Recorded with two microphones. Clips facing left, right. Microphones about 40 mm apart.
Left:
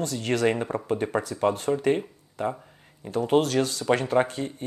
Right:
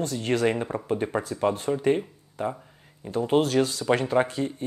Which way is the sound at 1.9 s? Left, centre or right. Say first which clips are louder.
Right 1 dB; centre.